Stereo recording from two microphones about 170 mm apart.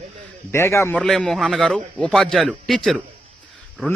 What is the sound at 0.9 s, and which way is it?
A man's voice, 5° left (ahead or behind).